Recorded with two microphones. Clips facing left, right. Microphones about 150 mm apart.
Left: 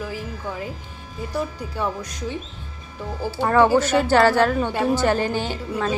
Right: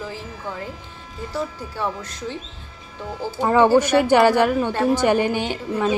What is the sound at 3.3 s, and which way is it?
A woman's voice, 15° right (ahead or behind).